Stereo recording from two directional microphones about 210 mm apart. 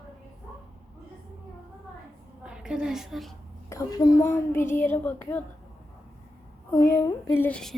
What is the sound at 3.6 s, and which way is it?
A woman's voice, 15° left (ahead or behind).